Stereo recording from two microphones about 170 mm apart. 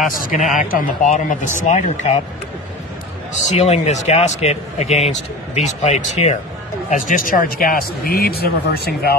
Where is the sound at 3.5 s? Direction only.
40° left (ahead or behind).